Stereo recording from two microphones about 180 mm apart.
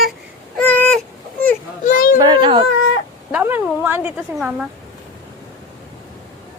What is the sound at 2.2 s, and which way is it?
Baby cry, 25° right (ahead or behind).